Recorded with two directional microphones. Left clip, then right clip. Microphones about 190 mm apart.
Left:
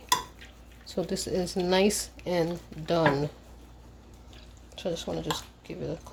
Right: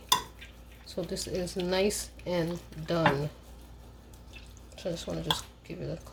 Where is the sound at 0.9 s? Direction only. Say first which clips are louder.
Left 4 dB; 35° left (ahead or behind).